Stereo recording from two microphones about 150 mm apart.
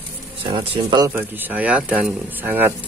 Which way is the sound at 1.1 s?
10° right (ahead or behind).